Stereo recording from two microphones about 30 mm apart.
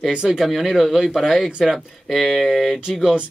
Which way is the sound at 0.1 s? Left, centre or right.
Centre.